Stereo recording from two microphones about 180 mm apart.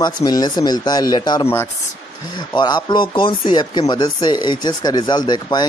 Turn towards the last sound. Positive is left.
turn(degrees=25)  # may be behind; listen again after turning